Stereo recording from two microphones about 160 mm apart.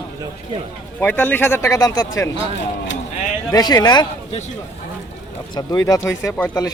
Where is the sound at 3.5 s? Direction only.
25° left (ahead or behind).